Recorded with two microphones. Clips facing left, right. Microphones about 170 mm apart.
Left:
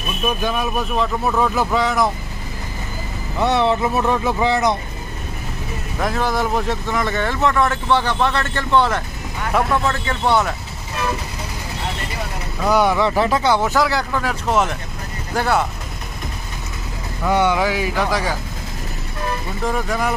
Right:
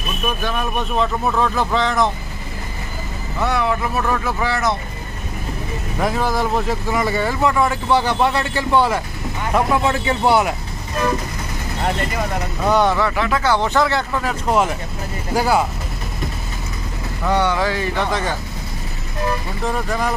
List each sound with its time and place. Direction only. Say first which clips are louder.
0.4 s speech: left 1 dB; 10° left (ahead or behind)
3.3 s speech: left 3 dB; 25° left (ahead or behind)
5.9 s speech: right 1 dB; 5° right (ahead or behind)
12.6 s speech: left 1 dB; 10° left (ahead or behind)
13.1 s speech: left 3 dB; 35° left (ahead or behind)
13.4 s speech: left 1 dB; 15° left (ahead or behind)
13.7 s speech: right 1 dB; centre (ahead or behind)
17.2 s speech: left 1 dB; 10° left (ahead or behind)
19.6 s speech: left 1 dB; centre (ahead or behind)